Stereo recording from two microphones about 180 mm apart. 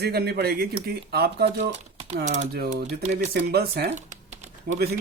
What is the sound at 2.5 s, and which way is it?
Speech, 60° right (ahead or behind).